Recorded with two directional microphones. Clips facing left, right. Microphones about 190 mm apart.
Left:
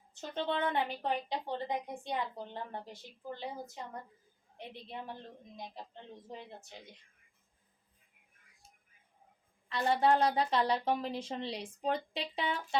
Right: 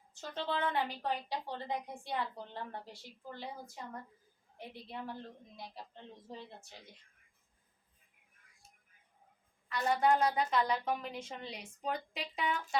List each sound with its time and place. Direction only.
0.2 s a woman's voice: 20° left (ahead or behind)
9.6 s a woman's voice: 25° left (ahead or behind)